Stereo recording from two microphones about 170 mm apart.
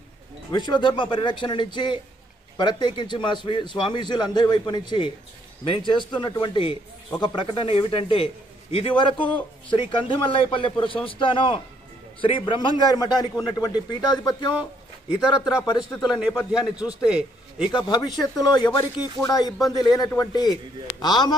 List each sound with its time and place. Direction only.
0.5 s a man's voice: 25° left (ahead or behind)
16.1 s a man's voice: 5° right (ahead or behind)
17.6 s a man's voice: 25° left (ahead or behind)